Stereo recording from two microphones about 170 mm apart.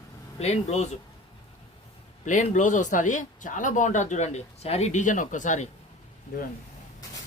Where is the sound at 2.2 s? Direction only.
45° left (ahead or behind).